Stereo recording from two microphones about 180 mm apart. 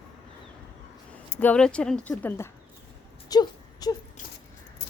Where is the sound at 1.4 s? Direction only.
5° left (ahead or behind).